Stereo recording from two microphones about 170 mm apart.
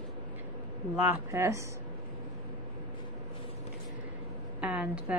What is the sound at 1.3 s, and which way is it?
Speech, 15° right (ahead or behind).